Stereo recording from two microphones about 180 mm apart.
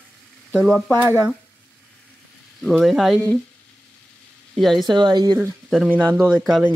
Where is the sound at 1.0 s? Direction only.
15° right (ahead or behind).